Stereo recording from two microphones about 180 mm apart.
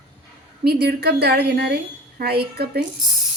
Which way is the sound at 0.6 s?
60° right (ahead or behind).